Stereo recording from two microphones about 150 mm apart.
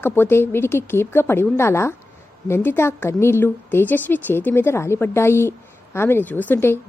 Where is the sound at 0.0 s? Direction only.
15° left (ahead or behind).